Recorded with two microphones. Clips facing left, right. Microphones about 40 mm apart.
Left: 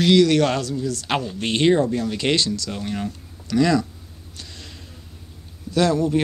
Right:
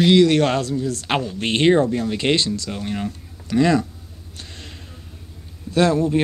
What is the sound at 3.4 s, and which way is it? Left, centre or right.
Speech, right.